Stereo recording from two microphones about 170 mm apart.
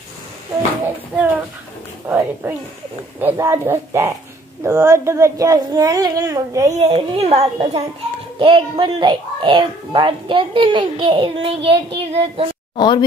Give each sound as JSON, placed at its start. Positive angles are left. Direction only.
{"t": 1.1, "sound": "a child's voice", "side_deg": -10}
{"t": 6.8, "sound": "a woman's voice", "side_deg": -35}
{"t": 12.7, "sound": "a woman's voice", "side_deg": 25}